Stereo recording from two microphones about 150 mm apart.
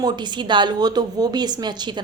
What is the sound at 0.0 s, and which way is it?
A woman's voice, 30° right (ahead or behind).